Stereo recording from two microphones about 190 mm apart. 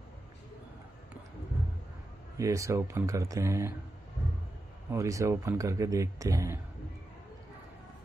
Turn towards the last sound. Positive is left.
turn(degrees=-15)  # may be behind; listen again after turning